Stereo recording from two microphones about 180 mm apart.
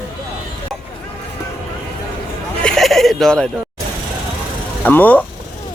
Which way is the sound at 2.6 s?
Centre (ahead or behind).